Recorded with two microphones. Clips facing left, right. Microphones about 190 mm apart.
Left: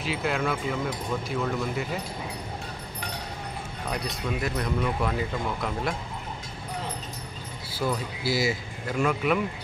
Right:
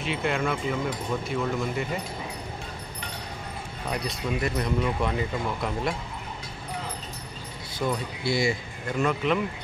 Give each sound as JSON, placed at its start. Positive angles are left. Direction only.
{"t": 0.0, "sound": "speech", "side_deg": 0}
{"t": 3.9, "sound": "speech", "side_deg": 0}
{"t": 7.7, "sound": "speech", "side_deg": 5}